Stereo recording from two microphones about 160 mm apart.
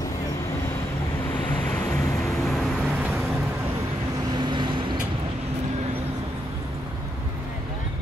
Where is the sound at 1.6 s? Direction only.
10° left (ahead or behind).